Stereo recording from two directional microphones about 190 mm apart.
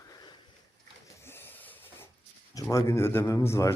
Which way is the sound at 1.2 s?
10° left (ahead or behind).